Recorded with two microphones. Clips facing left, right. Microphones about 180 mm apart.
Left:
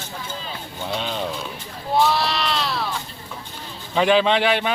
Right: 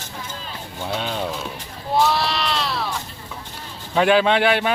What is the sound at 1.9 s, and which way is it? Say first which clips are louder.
Sheep: even; centre (ahead or behind).